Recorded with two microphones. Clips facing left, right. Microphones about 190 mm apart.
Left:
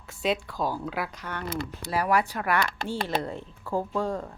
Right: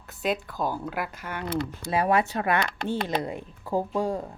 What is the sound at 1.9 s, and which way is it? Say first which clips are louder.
Speech: right 2 dB; 25° right (ahead or behind).